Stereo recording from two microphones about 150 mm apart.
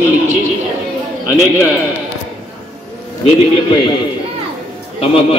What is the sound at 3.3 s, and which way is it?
Speech, 35° left (ahead or behind).